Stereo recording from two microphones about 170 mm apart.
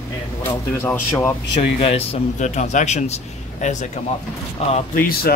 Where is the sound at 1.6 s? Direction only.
35° left (ahead or behind).